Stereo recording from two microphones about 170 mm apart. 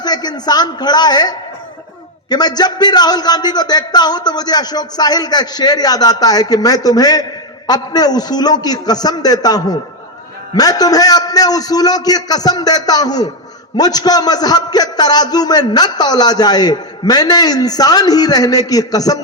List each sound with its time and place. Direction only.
0.0 s a woman's voice: 25° left (ahead or behind)